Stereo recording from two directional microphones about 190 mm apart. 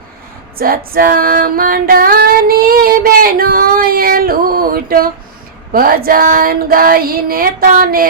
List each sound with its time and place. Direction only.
0.6 s female singing: 50° right (ahead or behind)